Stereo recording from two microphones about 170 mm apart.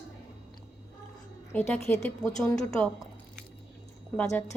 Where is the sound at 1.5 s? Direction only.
10° left (ahead or behind).